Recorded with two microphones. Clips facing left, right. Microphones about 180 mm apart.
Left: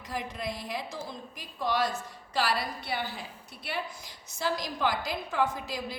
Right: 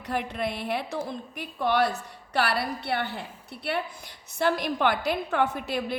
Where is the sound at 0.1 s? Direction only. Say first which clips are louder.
Right 6 dB; 65° right (ahead or behind).